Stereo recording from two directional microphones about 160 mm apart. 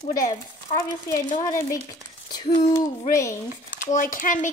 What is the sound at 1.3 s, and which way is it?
Speech, 50° left (ahead or behind).